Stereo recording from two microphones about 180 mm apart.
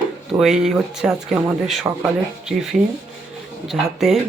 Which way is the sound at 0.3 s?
5° right (ahead or behind).